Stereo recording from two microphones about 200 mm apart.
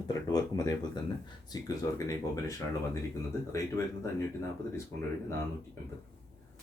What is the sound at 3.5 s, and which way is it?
Speech, 15° left (ahead or behind).